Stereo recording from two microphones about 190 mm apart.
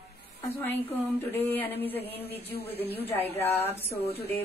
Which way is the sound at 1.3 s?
10° left (ahead or behind).